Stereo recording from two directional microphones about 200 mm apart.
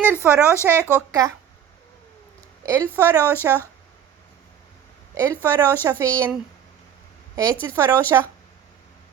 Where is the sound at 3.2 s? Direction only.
10° left (ahead or behind).